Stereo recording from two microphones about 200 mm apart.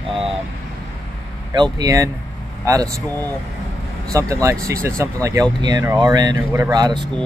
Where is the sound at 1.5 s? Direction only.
20° right (ahead or behind).